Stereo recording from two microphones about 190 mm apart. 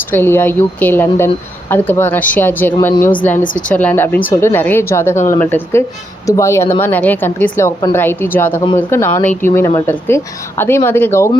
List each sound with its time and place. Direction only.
0.1 s speech: 10° left (ahead or behind)